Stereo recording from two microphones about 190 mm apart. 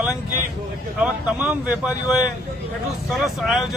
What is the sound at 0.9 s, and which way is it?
Speech, 5° right (ahead or behind).